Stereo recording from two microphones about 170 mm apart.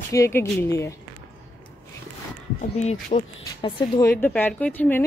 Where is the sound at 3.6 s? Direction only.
30° left (ahead or behind).